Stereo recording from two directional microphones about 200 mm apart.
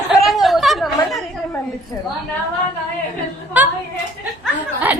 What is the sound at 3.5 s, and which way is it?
Speech, 10° right (ahead or behind).